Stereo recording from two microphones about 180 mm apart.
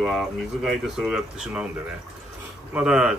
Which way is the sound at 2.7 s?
5° right (ahead or behind).